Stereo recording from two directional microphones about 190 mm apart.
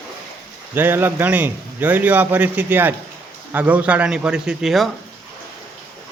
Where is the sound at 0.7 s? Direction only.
10° right (ahead or behind).